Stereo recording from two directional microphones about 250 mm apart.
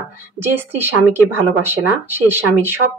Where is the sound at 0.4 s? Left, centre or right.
Centre.